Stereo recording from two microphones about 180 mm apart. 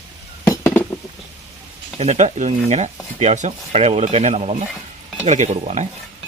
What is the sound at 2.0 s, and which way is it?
Speech, 40° right (ahead or behind).